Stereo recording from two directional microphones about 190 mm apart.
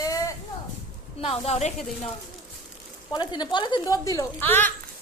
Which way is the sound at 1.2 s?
30° left (ahead or behind).